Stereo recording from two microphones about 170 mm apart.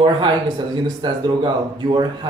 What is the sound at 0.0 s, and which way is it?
Speech, 25° right (ahead or behind).